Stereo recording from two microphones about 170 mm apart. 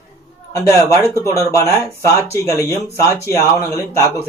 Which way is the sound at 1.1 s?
20° left (ahead or behind).